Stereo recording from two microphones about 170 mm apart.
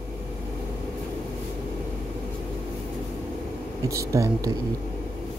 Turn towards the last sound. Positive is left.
turn(degrees=-20)  # may be behind; listen again after turning